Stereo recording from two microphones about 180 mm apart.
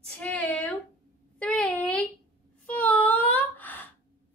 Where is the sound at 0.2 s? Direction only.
5° left (ahead or behind).